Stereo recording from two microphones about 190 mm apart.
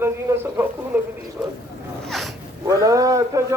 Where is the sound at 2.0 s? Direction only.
Centre (ahead or behind).